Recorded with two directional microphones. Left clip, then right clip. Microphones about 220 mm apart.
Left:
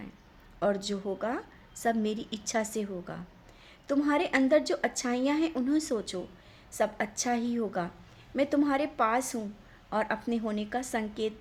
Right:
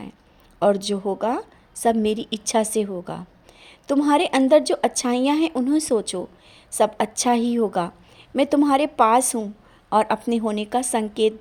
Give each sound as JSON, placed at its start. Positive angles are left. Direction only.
{"t": 0.6, "sound": "a woman's voice", "side_deg": -30}